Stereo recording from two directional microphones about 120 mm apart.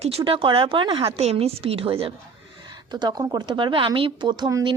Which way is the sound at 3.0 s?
35° right (ahead or behind).